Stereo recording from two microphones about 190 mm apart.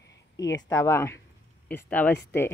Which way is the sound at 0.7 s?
15° left (ahead or behind).